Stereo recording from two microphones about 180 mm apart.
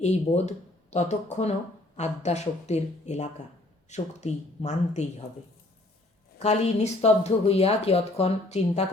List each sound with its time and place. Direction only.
0.0 s speech: 40° left (ahead or behind)
6.4 s speech: 35° left (ahead or behind)